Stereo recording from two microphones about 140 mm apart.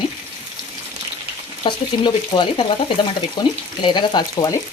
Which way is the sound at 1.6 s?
35° left (ahead or behind).